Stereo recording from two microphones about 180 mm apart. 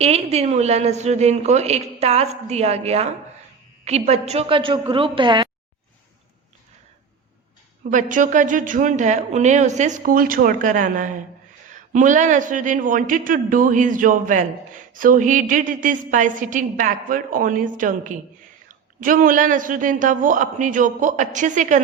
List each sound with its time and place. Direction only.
0.0 s a woman's voice: 35° right (ahead or behind)
7.9 s speech: 45° right (ahead or behind)